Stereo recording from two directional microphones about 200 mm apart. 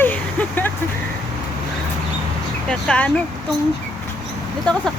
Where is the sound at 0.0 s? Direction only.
10° left (ahead or behind).